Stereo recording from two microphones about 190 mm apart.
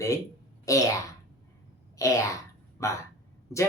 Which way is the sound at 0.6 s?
15° left (ahead or behind).